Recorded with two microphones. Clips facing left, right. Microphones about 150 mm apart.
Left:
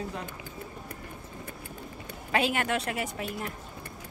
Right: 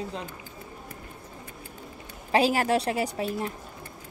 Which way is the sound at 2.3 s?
35° right (ahead or behind).